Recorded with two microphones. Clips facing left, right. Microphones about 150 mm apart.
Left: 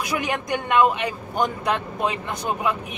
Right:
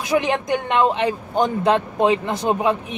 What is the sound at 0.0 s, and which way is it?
Speech, 25° right (ahead or behind).